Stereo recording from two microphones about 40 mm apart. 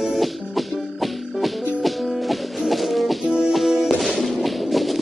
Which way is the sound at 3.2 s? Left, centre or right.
Right.